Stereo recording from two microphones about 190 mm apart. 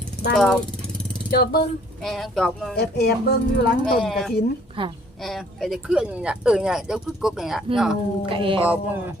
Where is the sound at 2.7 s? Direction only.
60° left (ahead or behind).